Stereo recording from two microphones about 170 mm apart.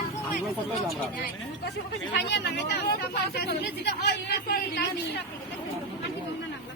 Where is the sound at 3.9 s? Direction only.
75° left (ahead or behind).